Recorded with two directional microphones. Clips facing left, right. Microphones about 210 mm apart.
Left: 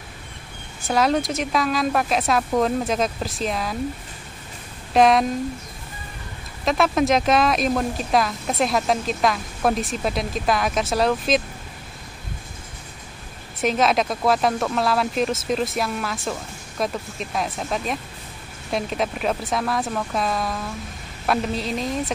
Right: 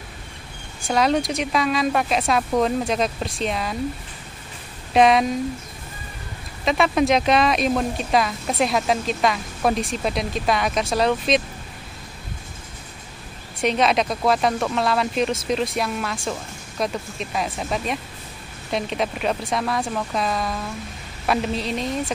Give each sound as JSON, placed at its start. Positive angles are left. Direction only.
{"t": 0.8, "sound": "speech", "side_deg": 0}
{"t": 4.9, "sound": "speech", "side_deg": 0}
{"t": 6.6, "sound": "speech", "side_deg": 0}
{"t": 13.6, "sound": "speech", "side_deg": 0}